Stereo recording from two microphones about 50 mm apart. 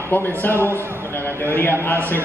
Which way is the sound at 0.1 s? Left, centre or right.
Left.